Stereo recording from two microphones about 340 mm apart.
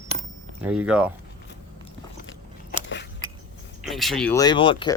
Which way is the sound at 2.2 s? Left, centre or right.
Left.